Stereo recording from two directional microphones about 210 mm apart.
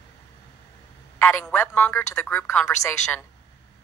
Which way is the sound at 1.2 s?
10° left (ahead or behind).